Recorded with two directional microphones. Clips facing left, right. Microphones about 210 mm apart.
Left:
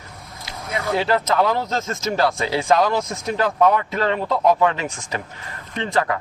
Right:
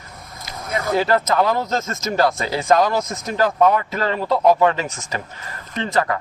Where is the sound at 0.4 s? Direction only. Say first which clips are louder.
Right 2 dB; 45° right (ahead or behind).